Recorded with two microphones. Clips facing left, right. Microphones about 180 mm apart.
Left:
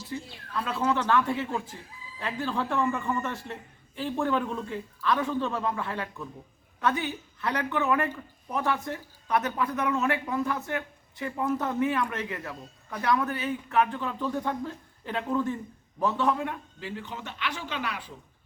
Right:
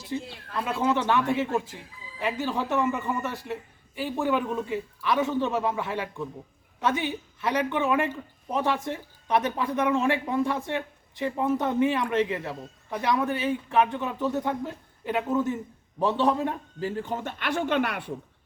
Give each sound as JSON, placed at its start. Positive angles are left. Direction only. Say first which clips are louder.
{"t": 0.1, "sound": "a man's voice", "louder": "right 4 dB", "side_deg": -20}
{"t": 3.2, "sound": "a man's voice", "louder": "right 2 dB", "side_deg": -5}
{"t": 5.4, "sound": "a man's voice", "louder": "right 3 dB", "side_deg": -25}
{"t": 16.0, "sound": "a man's voice", "louder": "right 3 dB", "side_deg": -30}